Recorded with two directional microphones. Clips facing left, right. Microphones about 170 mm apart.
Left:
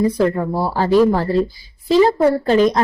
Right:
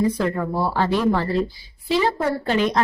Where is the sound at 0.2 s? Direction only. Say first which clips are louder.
Left 5 dB; 35° left (ahead or behind).